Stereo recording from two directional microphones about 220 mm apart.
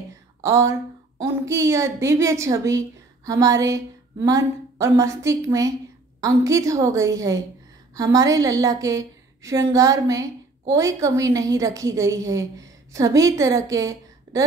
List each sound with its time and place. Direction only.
0.4 s a woman's voice: 15° right (ahead or behind)